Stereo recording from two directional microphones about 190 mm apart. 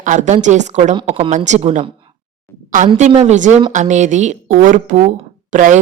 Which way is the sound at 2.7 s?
40° right (ahead or behind).